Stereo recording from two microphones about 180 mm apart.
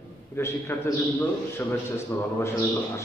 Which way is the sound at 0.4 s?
15° left (ahead or behind).